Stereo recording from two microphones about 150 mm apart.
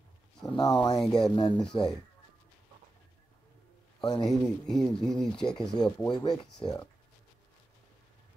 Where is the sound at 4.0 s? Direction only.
25° left (ahead or behind).